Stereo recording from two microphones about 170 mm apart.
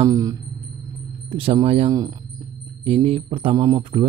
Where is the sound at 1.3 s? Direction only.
30° right (ahead or behind).